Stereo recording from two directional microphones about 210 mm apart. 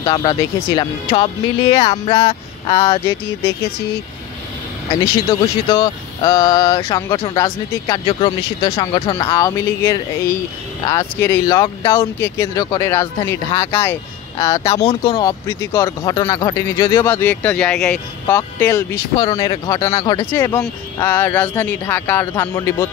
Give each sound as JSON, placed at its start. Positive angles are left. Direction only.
{"t": 0.0, "sound": "speech", "side_deg": 20}
{"t": 5.3, "sound": "speech", "side_deg": 20}
{"t": 14.8, "sound": "speech", "side_deg": 30}
{"t": 15.1, "sound": "speech", "side_deg": 15}